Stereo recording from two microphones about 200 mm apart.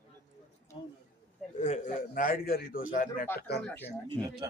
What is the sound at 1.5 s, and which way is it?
A man's voice, 35° left (ahead or behind).